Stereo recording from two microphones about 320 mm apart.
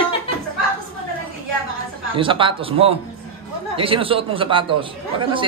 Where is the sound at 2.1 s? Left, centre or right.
Centre.